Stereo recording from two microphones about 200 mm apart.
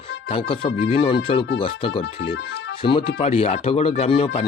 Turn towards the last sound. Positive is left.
turn(degrees=30)  # may be behind; listen again after turning